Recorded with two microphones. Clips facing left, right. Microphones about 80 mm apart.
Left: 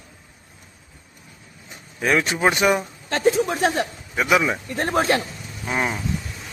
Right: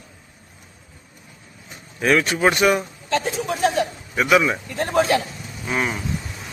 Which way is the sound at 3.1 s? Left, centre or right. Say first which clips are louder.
Left 3 dB; left.